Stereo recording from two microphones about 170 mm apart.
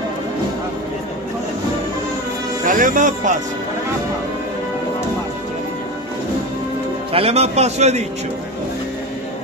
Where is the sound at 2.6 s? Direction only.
50° right (ahead or behind).